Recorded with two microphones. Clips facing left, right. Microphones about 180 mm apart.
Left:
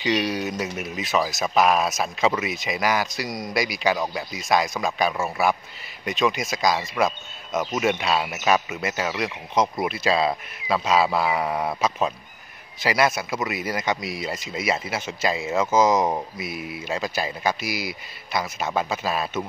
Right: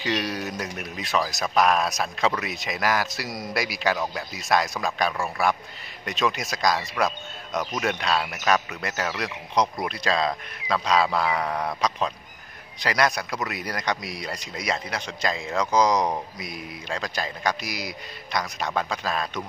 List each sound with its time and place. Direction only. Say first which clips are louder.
0.0 s speech: left 4 dB; centre (ahead or behind)